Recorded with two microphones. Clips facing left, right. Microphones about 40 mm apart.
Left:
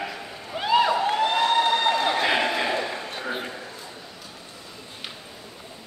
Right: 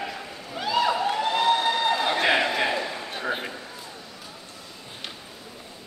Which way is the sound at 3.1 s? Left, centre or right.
Centre.